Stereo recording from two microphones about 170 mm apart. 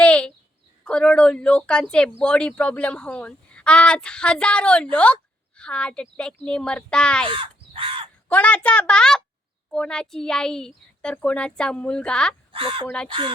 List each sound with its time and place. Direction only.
0.0 s a sound: 5° left (ahead or behind)
0.9 s speech: 5° left (ahead or behind)
7.3 s crow: 30° right (ahead or behind)
8.3 s speech: 10° left (ahead or behind)
12.5 s speech: 30° right (ahead or behind)